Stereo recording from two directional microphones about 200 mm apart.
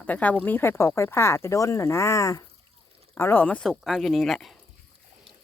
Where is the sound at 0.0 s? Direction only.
10° left (ahead or behind).